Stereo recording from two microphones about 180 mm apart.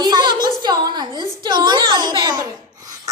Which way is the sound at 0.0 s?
25° right (ahead or behind).